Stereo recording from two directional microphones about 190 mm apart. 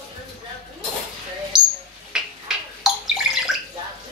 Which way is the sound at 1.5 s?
5° right (ahead or behind).